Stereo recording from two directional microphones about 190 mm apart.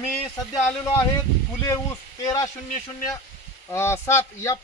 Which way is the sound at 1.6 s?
15° left (ahead or behind).